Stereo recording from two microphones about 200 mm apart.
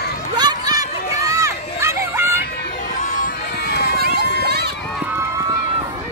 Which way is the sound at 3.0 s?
40° left (ahead or behind).